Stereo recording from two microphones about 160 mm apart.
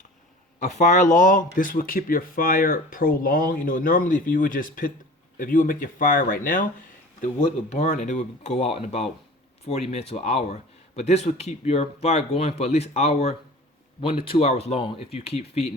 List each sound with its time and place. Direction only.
0.6 s speech: 50° left (ahead or behind)
7.2 s a man's voice: 50° left (ahead or behind)